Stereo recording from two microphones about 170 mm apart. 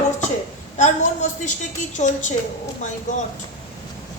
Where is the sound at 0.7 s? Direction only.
45° left (ahead or behind).